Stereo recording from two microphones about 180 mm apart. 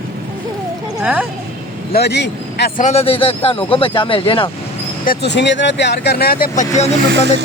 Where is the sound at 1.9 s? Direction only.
65° left (ahead or behind).